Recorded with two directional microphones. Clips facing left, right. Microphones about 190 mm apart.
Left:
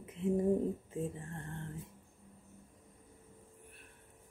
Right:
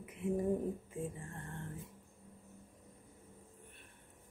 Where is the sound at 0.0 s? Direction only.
25° left (ahead or behind).